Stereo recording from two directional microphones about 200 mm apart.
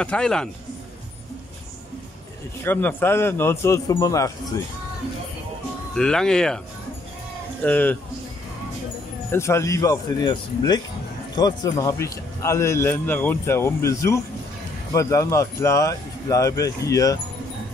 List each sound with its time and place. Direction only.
0.0 s speech: 5° left (ahead or behind)
2.6 s speech: 10° left (ahead or behind)
5.9 s speech: 5° left (ahead or behind)
7.6 s speech: 10° left (ahead or behind)
9.3 s speech: 15° left (ahead or behind)